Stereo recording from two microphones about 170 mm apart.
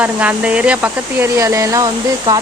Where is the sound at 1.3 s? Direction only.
20° right (ahead or behind).